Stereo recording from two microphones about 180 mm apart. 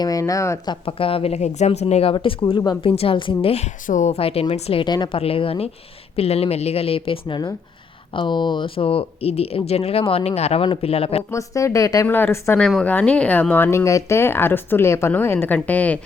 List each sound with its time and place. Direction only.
0.0 s speech: 20° left (ahead or behind)
11.3 s speech: 15° left (ahead or behind)